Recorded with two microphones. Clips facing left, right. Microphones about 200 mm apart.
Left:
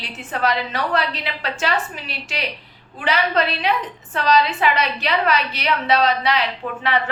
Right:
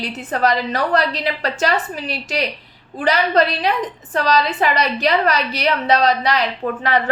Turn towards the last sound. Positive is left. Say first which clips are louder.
# right 2 dB
turn(degrees=-30)  # may be behind; listen again after turning